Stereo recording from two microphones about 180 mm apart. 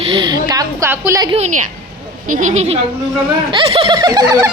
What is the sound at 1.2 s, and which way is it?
A woman's voice, 35° right (ahead or behind).